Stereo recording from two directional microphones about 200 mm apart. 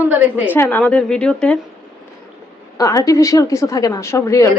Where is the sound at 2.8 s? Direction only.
15° left (ahead or behind).